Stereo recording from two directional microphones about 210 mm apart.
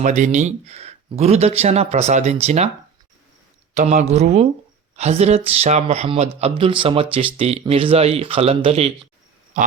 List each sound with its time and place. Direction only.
0.0 s speech: 35° right (ahead or behind)
3.8 s speech: 35° right (ahead or behind)
9.5 s a sound: 35° right (ahead or behind)